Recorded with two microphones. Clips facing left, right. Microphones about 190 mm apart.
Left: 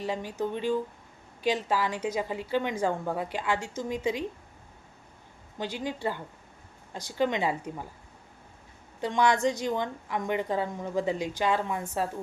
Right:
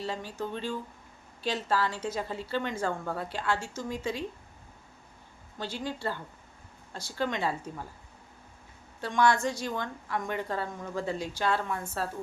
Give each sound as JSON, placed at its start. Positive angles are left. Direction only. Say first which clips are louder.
{"t": 0.0, "sound": "a woman's voice", "louder": "left 4 dB", "side_deg": 15}
{"t": 5.5, "sound": "a woman's voice", "louder": "left 2 dB", "side_deg": 15}
{"t": 9.0, "sound": "a woman's voice", "louder": "left 1 dB", "side_deg": 20}